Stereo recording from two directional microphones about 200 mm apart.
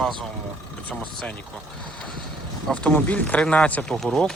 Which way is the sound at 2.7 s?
5° left (ahead or behind).